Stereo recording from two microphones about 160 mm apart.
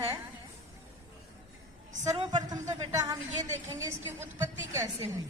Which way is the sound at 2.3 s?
25° right (ahead or behind).